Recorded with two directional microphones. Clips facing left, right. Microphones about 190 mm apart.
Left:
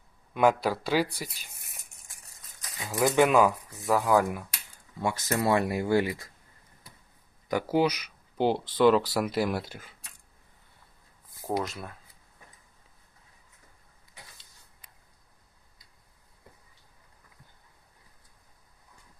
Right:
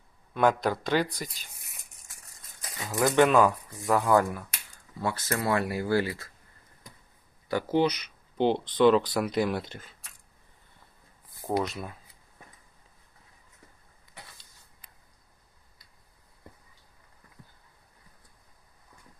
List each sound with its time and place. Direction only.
0.3 s speech: 5° left (ahead or behind)
3.0 s speech: 10° left (ahead or behind)
5.0 s speech: 15° left (ahead or behind)
7.4 s speech: 15° left (ahead or behind)
11.4 s speech: centre (ahead or behind)